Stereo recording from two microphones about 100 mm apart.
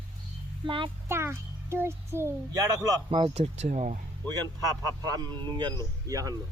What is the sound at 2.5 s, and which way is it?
Speech, 35° right (ahead or behind).